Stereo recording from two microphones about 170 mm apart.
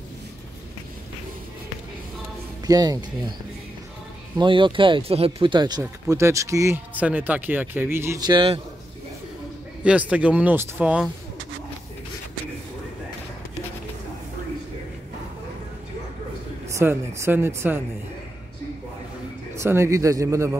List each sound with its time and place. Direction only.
2.6 s speech: 20° right (ahead or behind)
4.4 s speech: 30° right (ahead or behind)
9.8 s speech: 10° right (ahead or behind)
16.7 s speech: 15° right (ahead or behind)
19.5 s speech: 15° right (ahead or behind)